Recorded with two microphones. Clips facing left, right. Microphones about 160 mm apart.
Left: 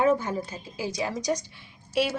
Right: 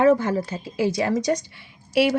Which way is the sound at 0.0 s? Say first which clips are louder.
Right 6 dB; 90° right.